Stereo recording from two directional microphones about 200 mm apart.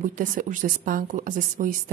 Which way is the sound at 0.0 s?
40° right (ahead or behind).